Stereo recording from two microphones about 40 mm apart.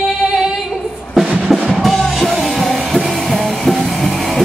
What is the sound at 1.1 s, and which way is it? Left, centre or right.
Music, centre.